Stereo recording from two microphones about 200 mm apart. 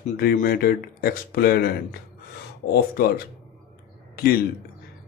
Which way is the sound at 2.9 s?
45° left (ahead or behind).